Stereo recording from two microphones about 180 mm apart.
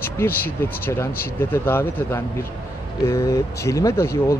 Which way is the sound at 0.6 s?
15° left (ahead or behind).